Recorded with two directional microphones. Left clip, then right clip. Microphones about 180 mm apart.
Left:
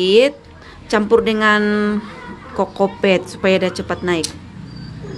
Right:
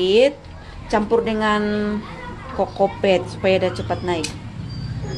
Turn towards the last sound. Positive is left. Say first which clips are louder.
# left 3 dB
turn(degrees=30)  # may be behind; listen again after turning